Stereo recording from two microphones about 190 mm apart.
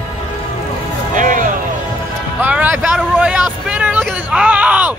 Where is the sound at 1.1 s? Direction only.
45° right (ahead or behind).